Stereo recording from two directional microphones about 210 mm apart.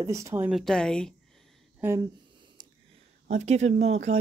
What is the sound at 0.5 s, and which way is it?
Speech, centre (ahead or behind).